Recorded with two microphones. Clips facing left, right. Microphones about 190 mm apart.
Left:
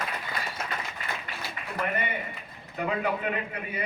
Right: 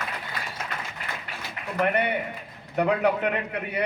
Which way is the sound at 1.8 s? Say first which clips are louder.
Right 7 dB; 70° right (ahead or behind).